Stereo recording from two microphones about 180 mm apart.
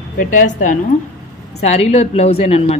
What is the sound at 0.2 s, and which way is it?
Speech, 45° left (ahead or behind).